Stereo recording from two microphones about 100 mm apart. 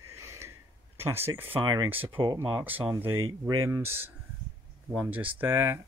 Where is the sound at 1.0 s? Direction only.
25° right (ahead or behind).